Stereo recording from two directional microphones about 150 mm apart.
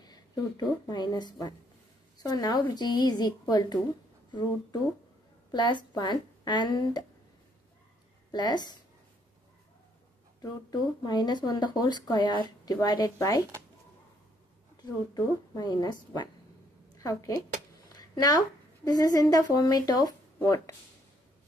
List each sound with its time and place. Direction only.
0.0 s a woman's voice: 25° left (ahead or behind)
5.5 s a woman's voice: 30° left (ahead or behind)
8.3 s speech: 30° left (ahead or behind)
10.4 s a woman's voice: 30° left (ahead or behind)
14.8 s a woman's voice: 25° left (ahead or behind)
17.9 s a sound: 25° left (ahead or behind)
18.9 s a woman's voice: 25° left (ahead or behind)